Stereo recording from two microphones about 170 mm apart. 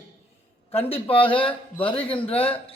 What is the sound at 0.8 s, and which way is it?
A man's voice, 35° left (ahead or behind).